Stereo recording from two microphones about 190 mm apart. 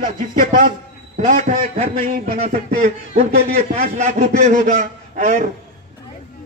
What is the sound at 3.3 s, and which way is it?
Speech, 55° right (ahead or behind).